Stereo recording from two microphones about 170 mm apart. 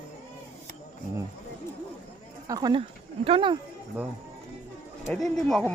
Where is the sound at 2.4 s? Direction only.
25° right (ahead or behind).